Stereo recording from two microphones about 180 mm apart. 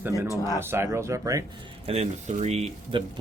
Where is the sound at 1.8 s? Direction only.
35° right (ahead or behind).